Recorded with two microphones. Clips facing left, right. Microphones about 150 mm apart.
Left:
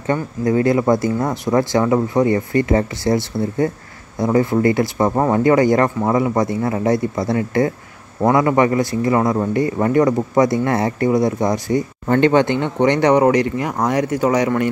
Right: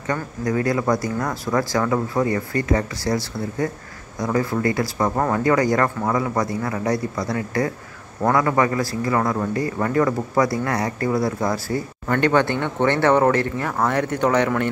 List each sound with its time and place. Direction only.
0.0 s a man's voice: 25° left (ahead or behind); by 14.5 s 10° left (ahead or behind)